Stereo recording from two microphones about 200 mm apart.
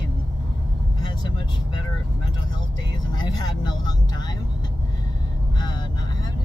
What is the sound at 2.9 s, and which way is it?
Speech, 20° left (ahead or behind).